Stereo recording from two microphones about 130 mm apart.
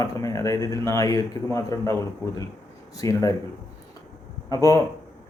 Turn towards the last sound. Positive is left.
turn(degrees=25)  # may be behind; listen again after turning